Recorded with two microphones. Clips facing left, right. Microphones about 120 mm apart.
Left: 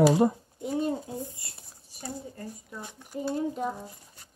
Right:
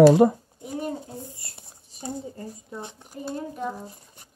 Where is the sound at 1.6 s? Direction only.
20° right (ahead or behind).